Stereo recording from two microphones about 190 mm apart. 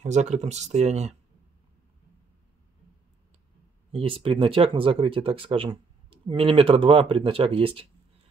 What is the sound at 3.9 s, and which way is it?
Speech, 30° right (ahead or behind).